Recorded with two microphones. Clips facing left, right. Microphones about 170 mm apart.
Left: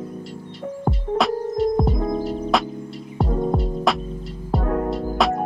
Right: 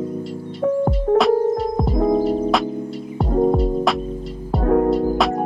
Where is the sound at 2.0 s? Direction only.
35° right (ahead or behind).